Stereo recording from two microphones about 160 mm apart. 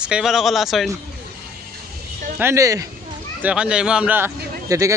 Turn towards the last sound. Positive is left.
turn(degrees=-20)  # may be behind; listen again after turning